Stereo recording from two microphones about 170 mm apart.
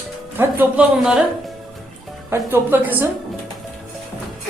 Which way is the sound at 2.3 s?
10° right (ahead or behind).